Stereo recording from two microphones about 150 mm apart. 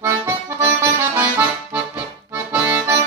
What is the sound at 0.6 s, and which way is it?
Accordion, 15° right (ahead or behind).